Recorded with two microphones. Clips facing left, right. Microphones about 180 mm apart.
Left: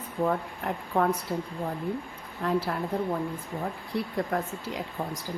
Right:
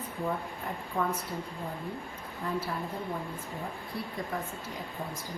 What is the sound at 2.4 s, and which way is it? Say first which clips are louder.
Speech: left 6 dB; 70° left (ahead or behind).